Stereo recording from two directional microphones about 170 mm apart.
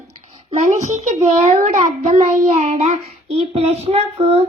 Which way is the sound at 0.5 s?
45° right (ahead or behind).